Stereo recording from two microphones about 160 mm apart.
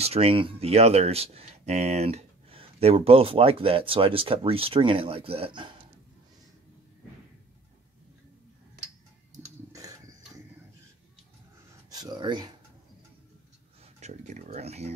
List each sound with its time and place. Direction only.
0.0 s speech: 35° right (ahead or behind)
9.3 s a sound: 20° right (ahead or behind)
11.9 s speech: 25° right (ahead or behind)
13.9 s speech: 45° right (ahead or behind)